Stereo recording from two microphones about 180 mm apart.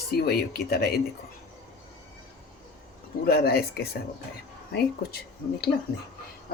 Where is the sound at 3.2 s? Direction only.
60° left (ahead or behind).